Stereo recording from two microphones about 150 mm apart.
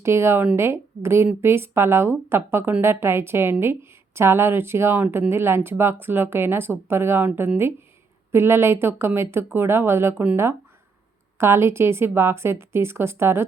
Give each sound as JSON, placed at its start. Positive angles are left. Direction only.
{"t": 0.0, "sound": "a woman's voice", "side_deg": -15}